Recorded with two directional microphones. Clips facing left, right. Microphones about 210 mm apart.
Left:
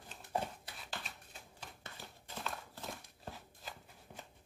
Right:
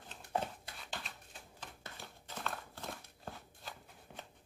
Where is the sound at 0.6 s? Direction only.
Centre (ahead or behind).